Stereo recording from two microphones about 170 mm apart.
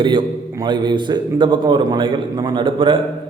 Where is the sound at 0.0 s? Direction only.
25° right (ahead or behind).